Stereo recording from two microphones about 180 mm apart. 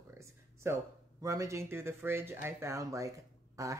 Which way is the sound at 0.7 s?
15° right (ahead or behind).